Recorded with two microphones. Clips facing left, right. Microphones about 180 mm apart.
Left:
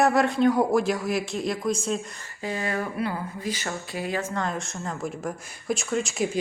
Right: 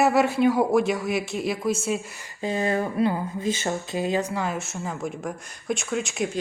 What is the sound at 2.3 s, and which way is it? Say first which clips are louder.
Speech: right 4 dB; 25° right (ahead or behind).